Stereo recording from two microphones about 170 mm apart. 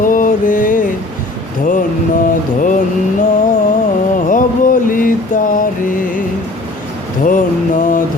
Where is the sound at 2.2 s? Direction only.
50° left (ahead or behind).